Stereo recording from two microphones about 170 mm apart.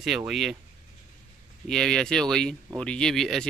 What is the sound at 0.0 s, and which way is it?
Speech, centre (ahead or behind).